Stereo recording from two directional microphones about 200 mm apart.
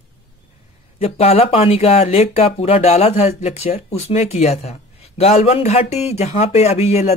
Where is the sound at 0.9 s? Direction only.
30° left (ahead or behind).